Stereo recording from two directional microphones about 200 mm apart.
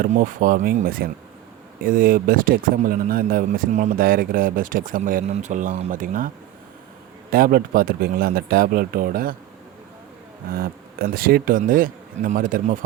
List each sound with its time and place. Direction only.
0.0 s speech: 45° right (ahead or behind)
10.5 s speech: 45° right (ahead or behind)